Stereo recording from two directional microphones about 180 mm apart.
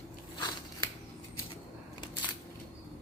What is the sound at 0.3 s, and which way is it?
Scissors, 20° left (ahead or behind).